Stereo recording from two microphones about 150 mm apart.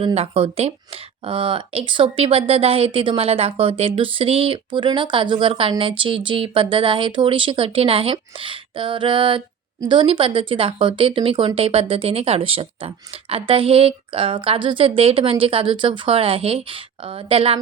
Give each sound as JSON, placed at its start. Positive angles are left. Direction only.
{"t": 0.0, "sound": "speech", "side_deg": -40}